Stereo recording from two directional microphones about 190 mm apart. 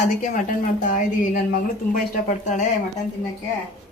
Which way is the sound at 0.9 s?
45° left (ahead or behind).